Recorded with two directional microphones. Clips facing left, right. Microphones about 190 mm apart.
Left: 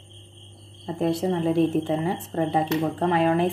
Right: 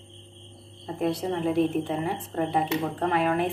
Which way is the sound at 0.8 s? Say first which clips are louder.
Left 3 dB; 25° left (ahead or behind).